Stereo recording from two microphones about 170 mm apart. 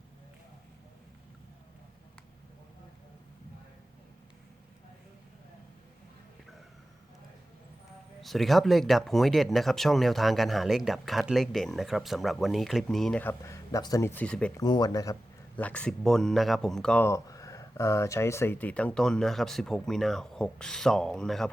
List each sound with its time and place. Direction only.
8.2 s speech: centre (ahead or behind)
14.5 s speech: 25° left (ahead or behind)
15.5 s speech: 10° left (ahead or behind)